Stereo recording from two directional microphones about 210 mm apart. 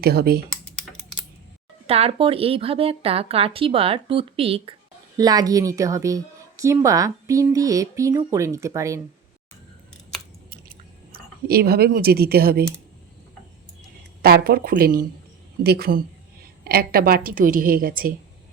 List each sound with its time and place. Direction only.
0.0 s a woman's voice: 50° right (ahead or behind)
1.9 s a woman's voice: 25° right (ahead or behind)
11.1 s speech: 45° right (ahead or behind)
14.2 s a woman's voice: 50° right (ahead or behind)